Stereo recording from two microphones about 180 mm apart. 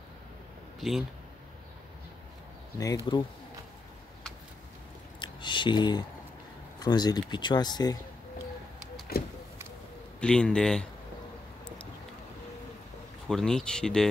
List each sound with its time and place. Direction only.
0.7 s a man's voice: centre (ahead or behind)
3.1 s speech: 30° left (ahead or behind)
5.2 s a sound: 25° left (ahead or behind)
6.8 s speech: 20° left (ahead or behind)
9.1 s speech: 60° left (ahead or behind)
10.2 s speech: 5° left (ahead or behind)
13.3 s speech: 5° left (ahead or behind)